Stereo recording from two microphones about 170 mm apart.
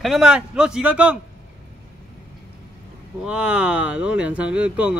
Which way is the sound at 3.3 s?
5° right (ahead or behind).